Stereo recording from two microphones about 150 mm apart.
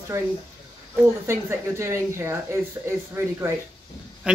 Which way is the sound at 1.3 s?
20° right (ahead or behind).